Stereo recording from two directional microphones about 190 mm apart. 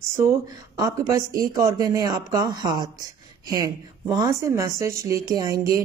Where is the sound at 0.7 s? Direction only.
20° right (ahead or behind).